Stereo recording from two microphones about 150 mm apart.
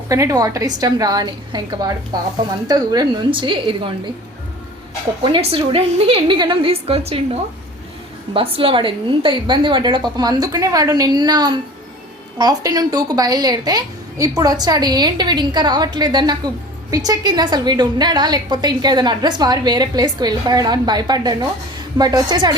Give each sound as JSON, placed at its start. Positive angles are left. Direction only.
{"t": 0.1, "sound": "a woman's voice", "side_deg": -20}
{"t": 5.2, "sound": "a woman's voice", "side_deg": -35}